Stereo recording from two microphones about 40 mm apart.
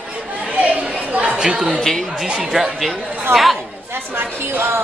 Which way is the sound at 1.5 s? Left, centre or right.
Right.